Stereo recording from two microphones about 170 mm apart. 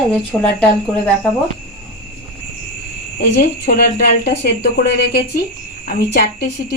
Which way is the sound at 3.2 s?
70° left (ahead or behind).